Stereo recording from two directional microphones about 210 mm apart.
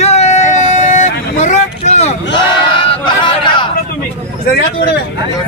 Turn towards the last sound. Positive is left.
turn(degrees=25)  # may be behind; listen again after turning